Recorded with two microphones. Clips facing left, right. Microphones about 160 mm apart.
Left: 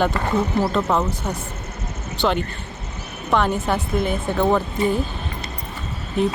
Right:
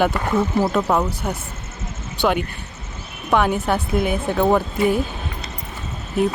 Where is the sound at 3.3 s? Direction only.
5° right (ahead or behind).